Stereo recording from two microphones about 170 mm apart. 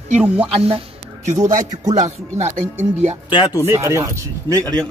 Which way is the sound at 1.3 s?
45° right (ahead or behind).